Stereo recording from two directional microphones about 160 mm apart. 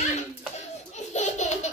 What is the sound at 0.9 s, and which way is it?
Laughter, 45° left (ahead or behind).